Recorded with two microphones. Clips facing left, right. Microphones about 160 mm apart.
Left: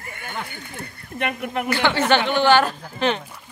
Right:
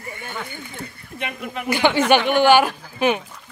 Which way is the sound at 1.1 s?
60° left (ahead or behind).